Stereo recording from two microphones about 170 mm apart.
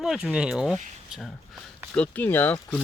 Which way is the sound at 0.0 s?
5° right (ahead or behind).